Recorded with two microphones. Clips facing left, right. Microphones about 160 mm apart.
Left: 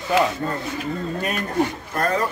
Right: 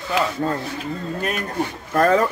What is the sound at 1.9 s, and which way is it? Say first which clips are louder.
Speech: right 6 dB; 90° right.